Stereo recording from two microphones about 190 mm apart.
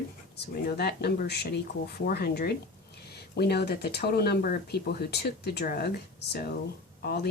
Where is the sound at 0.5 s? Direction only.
55° left (ahead or behind).